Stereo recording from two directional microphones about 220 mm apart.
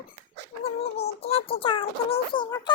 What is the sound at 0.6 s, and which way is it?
Child singing, 25° left (ahead or behind).